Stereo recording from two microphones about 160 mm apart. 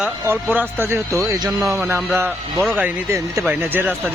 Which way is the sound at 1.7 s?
10° right (ahead or behind).